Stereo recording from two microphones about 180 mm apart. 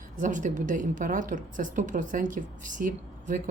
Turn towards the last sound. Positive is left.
turn(degrees=-45)  # may be behind; listen again after turning